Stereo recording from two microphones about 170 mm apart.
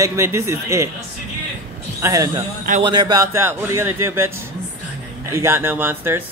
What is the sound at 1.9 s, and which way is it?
A man's voice, 20° right (ahead or behind).